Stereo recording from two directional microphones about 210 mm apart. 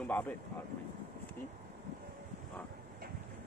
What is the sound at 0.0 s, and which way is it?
Speech, 10° left (ahead or behind).